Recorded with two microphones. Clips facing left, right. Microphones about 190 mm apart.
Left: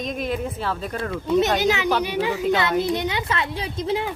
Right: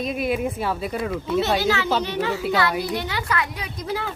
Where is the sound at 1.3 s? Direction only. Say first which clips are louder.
Left 3 dB; 20° left (ahead or behind).